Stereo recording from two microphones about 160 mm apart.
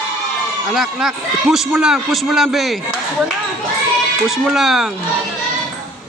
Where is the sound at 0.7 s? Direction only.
Centre (ahead or behind).